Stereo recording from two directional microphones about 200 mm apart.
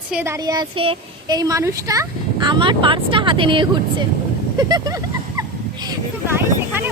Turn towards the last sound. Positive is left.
turn(degrees=-10)  # may be behind; listen again after turning